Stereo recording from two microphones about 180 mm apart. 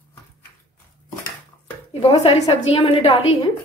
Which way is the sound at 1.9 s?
35° left (ahead or behind).